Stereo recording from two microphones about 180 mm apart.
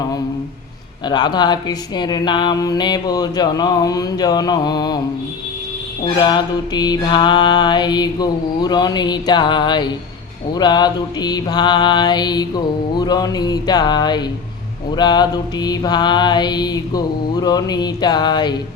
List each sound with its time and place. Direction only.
1.0 s speech: 25° left (ahead or behind)
6.1 s speech: 25° left (ahead or behind)